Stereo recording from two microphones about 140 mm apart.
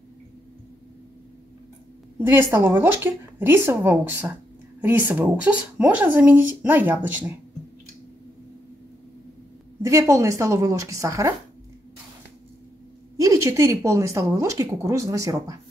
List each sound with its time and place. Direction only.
2.1 s speech: 15° right (ahead or behind)
9.8 s a woman's voice: 20° right (ahead or behind)
13.2 s a woman's voice: 20° right (ahead or behind)